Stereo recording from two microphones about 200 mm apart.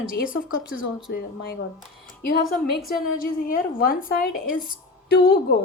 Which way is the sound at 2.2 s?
50° left (ahead or behind).